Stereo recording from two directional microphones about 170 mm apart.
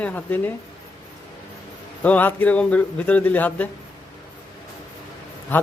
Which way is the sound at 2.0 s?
10° left (ahead or behind).